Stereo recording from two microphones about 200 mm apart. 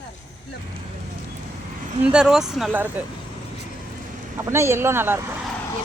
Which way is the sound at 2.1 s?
5° right (ahead or behind).